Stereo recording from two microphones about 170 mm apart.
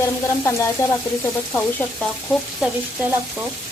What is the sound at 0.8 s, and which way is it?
Frying, 15° left (ahead or behind).